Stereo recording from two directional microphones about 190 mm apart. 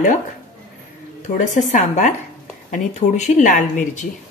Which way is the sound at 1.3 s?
40° left (ahead or behind).